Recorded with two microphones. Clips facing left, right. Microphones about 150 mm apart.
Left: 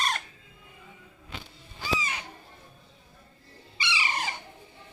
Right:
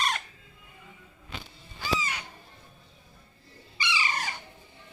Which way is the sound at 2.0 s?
25° left (ahead or behind).